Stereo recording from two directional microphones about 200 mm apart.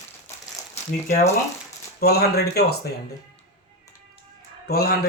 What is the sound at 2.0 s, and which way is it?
Speech, 50° left (ahead or behind).